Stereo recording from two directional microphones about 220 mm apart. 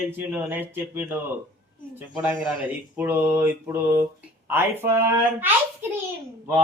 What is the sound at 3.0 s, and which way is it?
A man's voice, 10° right (ahead or behind).